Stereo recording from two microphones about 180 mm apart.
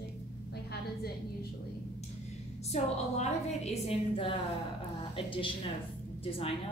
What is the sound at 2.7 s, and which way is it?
A woman's voice, 40° left (ahead or behind).